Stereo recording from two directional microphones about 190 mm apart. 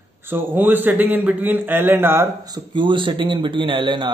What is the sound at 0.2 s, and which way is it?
A man's voice, 10° right (ahead or behind).